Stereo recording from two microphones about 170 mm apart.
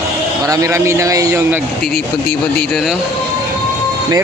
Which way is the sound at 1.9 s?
70° left (ahead or behind).